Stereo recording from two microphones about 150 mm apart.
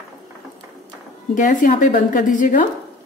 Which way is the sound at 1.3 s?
60° left (ahead or behind).